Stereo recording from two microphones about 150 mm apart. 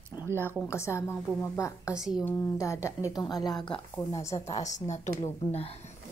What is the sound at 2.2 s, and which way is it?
A woman's voice, 15° left (ahead or behind).